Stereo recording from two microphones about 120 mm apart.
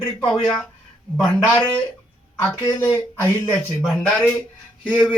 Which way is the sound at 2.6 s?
25° left (ahead or behind).